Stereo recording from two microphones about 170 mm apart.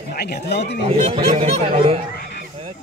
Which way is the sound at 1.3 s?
35° right (ahead or behind).